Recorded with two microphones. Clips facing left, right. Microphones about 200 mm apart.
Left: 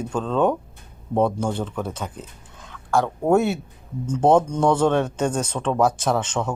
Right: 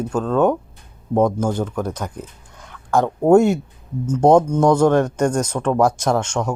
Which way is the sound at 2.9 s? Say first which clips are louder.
Right 5 dB; 20° right (ahead or behind).